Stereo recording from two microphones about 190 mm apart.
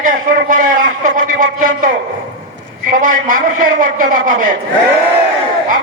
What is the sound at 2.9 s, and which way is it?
A man's voice, 45° right (ahead or behind).